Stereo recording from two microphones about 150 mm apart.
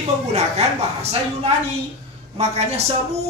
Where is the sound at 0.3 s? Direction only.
45° right (ahead or behind).